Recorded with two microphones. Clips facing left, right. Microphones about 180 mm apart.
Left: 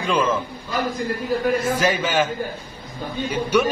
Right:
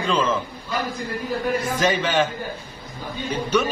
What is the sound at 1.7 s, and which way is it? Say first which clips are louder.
Speech: even; 5° left (ahead or behind).